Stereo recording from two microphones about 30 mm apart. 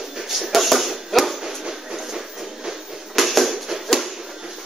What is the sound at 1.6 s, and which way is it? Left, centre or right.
Train, centre.